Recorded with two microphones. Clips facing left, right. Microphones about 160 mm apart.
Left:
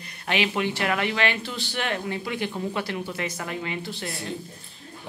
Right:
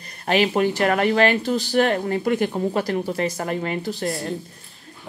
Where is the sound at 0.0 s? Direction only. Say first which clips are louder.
Right 6 dB; 40° right (ahead or behind).